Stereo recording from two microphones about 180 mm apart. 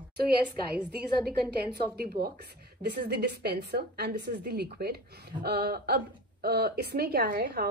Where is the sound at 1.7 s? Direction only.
60° right (ahead or behind).